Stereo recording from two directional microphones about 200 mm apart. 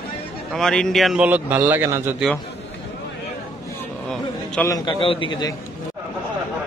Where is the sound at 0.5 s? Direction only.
Centre (ahead or behind).